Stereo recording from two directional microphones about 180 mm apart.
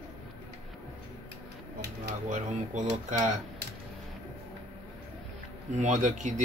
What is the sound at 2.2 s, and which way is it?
Speech, 45° right (ahead or behind).